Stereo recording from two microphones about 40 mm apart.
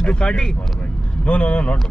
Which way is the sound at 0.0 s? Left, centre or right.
Left.